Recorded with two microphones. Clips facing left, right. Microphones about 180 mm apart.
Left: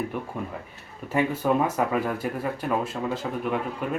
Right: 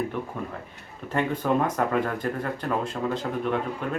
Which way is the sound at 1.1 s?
5° left (ahead or behind).